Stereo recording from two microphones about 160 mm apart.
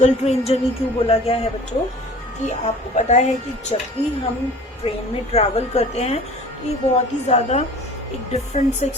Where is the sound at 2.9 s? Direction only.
45° left (ahead or behind).